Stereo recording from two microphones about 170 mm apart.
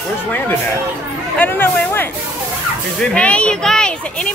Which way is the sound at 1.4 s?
10° left (ahead or behind).